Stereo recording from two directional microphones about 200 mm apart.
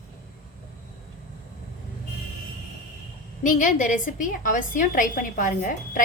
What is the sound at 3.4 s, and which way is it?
A woman's voice, 40° left (ahead or behind).